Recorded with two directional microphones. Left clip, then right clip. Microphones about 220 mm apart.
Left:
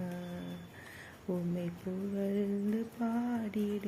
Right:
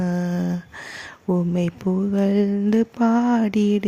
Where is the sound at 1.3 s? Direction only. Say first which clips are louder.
Right 14 dB; 45° right (ahead or behind).